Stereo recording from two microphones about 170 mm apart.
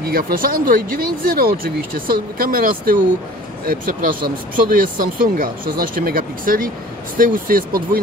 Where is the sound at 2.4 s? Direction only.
60° right (ahead or behind).